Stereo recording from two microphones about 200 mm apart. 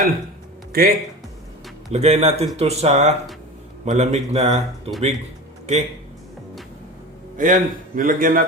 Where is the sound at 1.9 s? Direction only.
35° right (ahead or behind).